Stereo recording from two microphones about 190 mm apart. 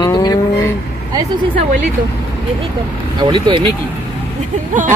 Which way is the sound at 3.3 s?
25° right (ahead or behind).